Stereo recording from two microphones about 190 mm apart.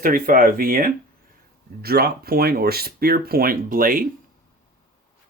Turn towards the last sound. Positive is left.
turn(degrees=-45)  # may be behind; listen again after turning